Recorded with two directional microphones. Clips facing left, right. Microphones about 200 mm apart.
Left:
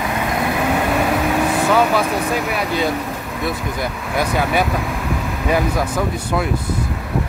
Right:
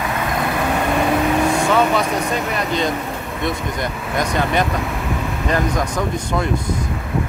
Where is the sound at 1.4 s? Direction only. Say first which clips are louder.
Even; 5° left (ahead or behind).